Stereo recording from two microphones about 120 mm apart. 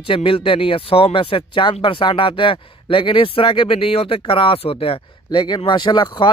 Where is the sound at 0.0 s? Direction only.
50° left (ahead or behind).